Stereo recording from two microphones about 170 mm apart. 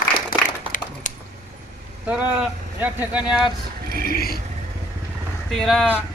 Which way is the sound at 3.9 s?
65° left (ahead or behind).